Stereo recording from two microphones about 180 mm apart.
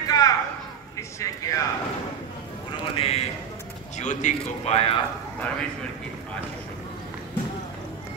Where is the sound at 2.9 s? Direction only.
30° left (ahead or behind).